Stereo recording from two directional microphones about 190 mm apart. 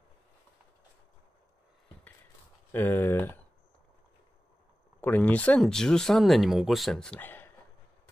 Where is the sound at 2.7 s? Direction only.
10° left (ahead or behind).